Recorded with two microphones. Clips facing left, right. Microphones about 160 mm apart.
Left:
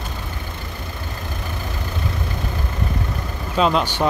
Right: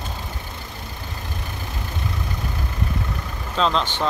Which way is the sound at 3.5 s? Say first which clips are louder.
Left 3 dB; 10° left (ahead or behind).